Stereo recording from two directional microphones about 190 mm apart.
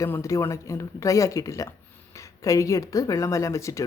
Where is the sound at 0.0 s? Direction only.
15° left (ahead or behind).